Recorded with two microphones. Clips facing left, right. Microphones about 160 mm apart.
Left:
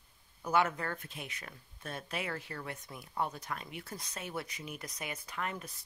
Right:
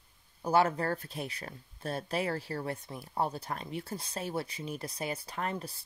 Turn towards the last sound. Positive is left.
turn(degrees=-35)  # may be behind; listen again after turning